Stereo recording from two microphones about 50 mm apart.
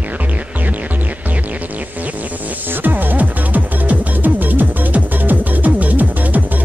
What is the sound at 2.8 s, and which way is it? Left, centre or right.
Music, right.